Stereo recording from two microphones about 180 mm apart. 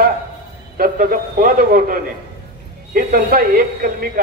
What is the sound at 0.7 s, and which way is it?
A man's voice, 50° right (ahead or behind).